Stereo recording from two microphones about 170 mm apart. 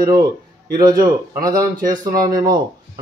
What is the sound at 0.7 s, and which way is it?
Speech, 20° right (ahead or behind).